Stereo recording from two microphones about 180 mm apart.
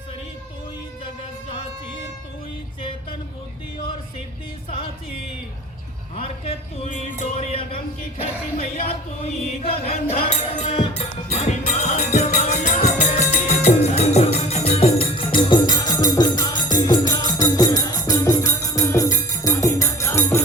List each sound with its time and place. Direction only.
6.1 s speech: 35° left (ahead or behind)
8.2 s chant: 35° left (ahead or behind)
13.7 s music: 35° left (ahead or behind); by 20.4 s 15° left (ahead or behind)